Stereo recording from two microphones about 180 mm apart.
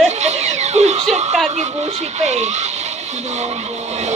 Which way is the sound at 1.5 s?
40° right (ahead or behind).